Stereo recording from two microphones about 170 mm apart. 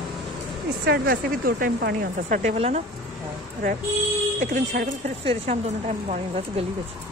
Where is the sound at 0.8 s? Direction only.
65° right (ahead or behind); by 2.8 s 40° right (ahead or behind).